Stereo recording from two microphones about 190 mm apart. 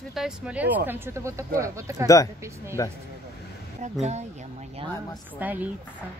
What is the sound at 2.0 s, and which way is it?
Speech, 15° left (ahead or behind).